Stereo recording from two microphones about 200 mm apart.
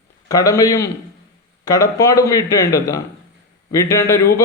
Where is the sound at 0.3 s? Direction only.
20° left (ahead or behind).